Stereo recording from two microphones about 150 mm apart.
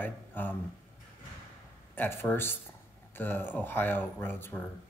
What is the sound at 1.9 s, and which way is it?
Speech, 15° left (ahead or behind).